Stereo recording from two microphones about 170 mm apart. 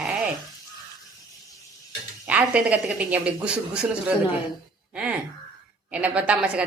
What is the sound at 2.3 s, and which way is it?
A woman's voice, 10° right (ahead or behind).